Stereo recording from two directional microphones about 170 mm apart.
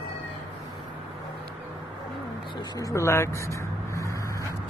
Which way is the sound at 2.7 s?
20° left (ahead or behind).